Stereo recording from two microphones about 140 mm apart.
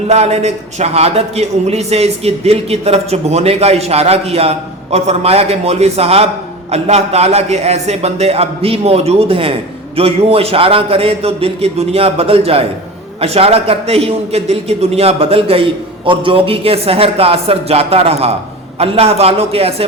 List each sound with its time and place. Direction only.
0.1 s a man's voice: 50° right (ahead or behind)